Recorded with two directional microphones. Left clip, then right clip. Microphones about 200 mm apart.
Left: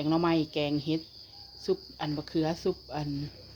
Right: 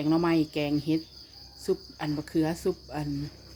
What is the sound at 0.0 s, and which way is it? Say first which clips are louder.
Speech: right 2 dB; centre (ahead or behind).